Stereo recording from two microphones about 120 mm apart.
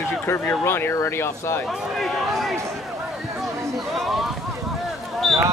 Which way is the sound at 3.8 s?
Centre (ahead or behind).